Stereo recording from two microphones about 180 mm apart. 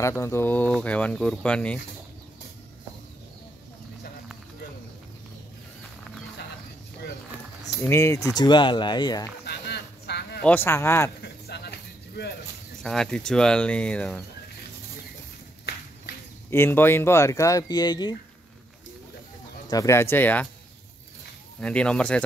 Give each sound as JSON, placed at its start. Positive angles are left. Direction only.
{"t": 0.0, "sound": "speech", "side_deg": 15}
{"t": 7.8, "sound": "speech", "side_deg": 15}
{"t": 9.5, "sound": "a sound", "side_deg": 65}
{"t": 10.4, "sound": "speech", "side_deg": 10}
{"t": 11.2, "sound": "a sound", "side_deg": 65}
{"t": 12.8, "sound": "speech", "side_deg": 5}
{"t": 16.4, "sound": "speech", "side_deg": 10}
{"t": 19.7, "sound": "speech", "side_deg": 15}
{"t": 21.5, "sound": "speech", "side_deg": 5}